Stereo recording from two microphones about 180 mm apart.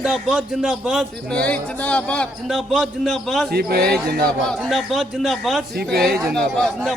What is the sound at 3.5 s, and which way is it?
Speech, 60° right (ahead or behind).